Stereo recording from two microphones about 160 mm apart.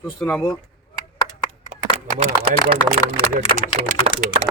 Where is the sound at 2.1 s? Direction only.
40° right (ahead or behind).